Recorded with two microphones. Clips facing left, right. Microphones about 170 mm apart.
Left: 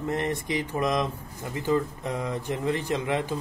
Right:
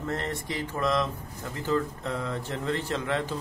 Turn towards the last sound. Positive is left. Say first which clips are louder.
# left 2 dB
turn(degrees=15)  # may be behind; listen again after turning